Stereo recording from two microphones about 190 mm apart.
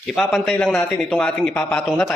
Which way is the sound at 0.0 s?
Centre (ahead or behind).